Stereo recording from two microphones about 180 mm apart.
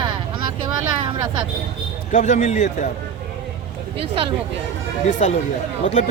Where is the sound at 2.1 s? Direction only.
40° left (ahead or behind).